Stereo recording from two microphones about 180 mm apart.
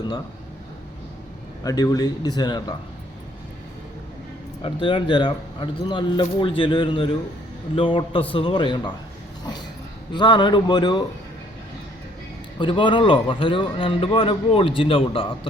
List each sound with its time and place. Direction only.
1.6 s speech: 20° left (ahead or behind)
4.6 s speech: 25° left (ahead or behind)
10.1 s speech: 25° left (ahead or behind)
12.5 s speech: 25° left (ahead or behind)